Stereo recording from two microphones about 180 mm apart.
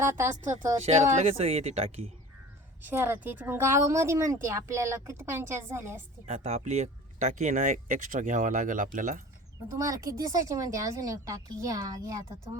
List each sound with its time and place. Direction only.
0.0 s speech: 15° right (ahead or behind)
0.8 s speech: 40° right (ahead or behind)
2.8 s speech: 10° right (ahead or behind)
6.2 s speech: 35° right (ahead or behind)
9.7 s speech: 20° right (ahead or behind)